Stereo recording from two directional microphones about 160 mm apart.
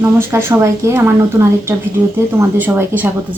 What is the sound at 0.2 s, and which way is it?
Speech, 15° right (ahead or behind).